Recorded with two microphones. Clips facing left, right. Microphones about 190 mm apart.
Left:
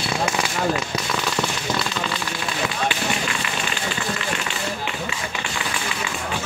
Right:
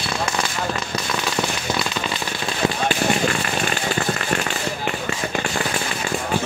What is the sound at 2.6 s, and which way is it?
Run, 40° right (ahead or behind).